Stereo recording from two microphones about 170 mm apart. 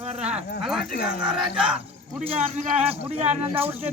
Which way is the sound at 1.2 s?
5° right (ahead or behind).